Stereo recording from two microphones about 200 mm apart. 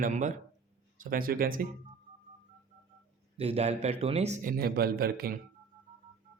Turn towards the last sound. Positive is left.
turn(degrees=-45)  # may be behind; listen again after turning